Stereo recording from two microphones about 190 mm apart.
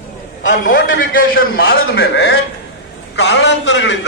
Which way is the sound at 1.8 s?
80° left.